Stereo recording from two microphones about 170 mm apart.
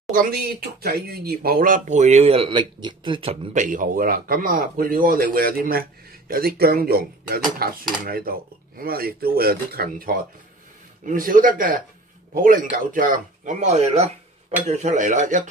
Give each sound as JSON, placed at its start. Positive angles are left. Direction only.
{"t": 0.1, "sound": "speech", "side_deg": -60}
{"t": 3.5, "sound": "speech", "side_deg": -50}